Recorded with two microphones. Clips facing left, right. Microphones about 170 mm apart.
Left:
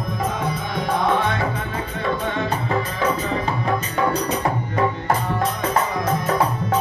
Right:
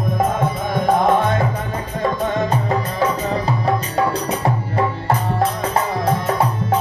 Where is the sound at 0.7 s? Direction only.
45° right (ahead or behind).